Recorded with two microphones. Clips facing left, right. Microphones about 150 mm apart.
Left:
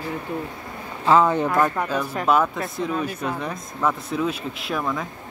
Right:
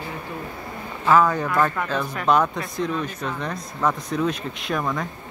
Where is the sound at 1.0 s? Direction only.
25° left (ahead or behind).